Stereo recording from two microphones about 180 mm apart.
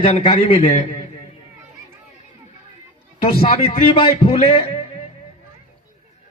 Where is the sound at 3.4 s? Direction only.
35° left (ahead or behind).